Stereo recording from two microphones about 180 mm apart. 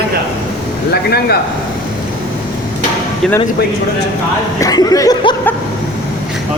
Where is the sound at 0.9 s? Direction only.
60° left (ahead or behind).